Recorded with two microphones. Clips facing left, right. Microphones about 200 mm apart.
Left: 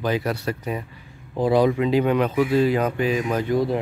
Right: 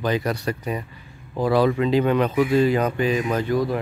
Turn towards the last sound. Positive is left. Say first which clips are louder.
# left 1 dB
turn(degrees=25)  # may be behind; listen again after turning